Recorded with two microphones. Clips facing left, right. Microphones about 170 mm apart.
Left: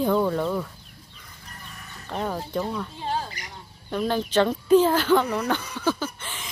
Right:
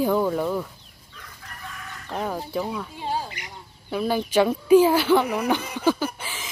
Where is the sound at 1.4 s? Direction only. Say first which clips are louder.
Right 5 dB; 90° right.